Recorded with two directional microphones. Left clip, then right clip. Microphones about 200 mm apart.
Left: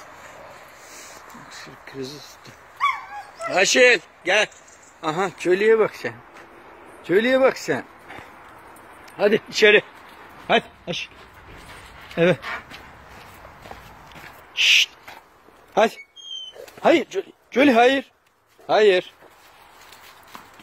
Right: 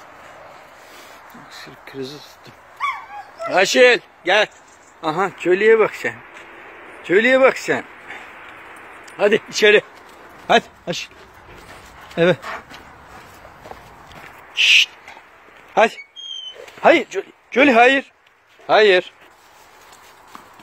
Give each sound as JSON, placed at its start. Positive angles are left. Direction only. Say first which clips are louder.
{"t": 0.0, "sound": "vehicle", "louder": "right 1 dB", "side_deg": -10}
{"t": 1.5, "sound": "speech", "louder": "right 4 dB", "side_deg": -10}
{"t": 3.5, "sound": "speech", "louder": "right 3 dB", "side_deg": -15}
{"t": 5.0, "sound": "a man's voice", "louder": "right 3 dB", "side_deg": -5}
{"t": 12.2, "sound": "speech", "louder": "right 3 dB", "side_deg": -5}
{"t": 14.5, "sound": "owl", "louder": "right 3 dB", "side_deg": 0}
{"t": 15.7, "sound": "speech", "louder": "right 3 dB", "side_deg": 10}